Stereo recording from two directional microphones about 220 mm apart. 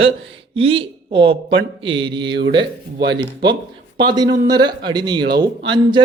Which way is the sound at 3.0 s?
50° right (ahead or behind).